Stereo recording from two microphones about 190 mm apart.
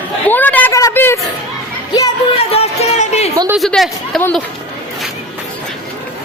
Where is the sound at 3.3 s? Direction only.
15° right (ahead or behind).